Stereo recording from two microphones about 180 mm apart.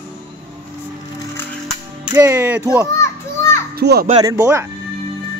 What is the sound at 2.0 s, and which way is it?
Speech, 10° right (ahead or behind).